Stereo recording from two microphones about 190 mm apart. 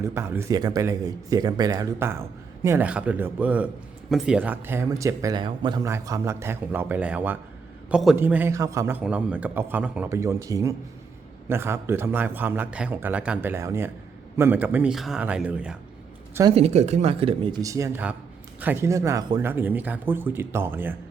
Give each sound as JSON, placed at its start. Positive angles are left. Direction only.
{"t": 0.0, "sound": "speech", "side_deg": -15}
{"t": 16.6, "sound": "speech", "side_deg": -35}